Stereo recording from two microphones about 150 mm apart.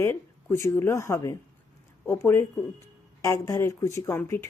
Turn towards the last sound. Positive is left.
turn(degrees=15)  # may be behind; listen again after turning